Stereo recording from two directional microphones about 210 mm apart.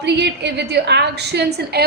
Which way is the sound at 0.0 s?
55° right (ahead or behind).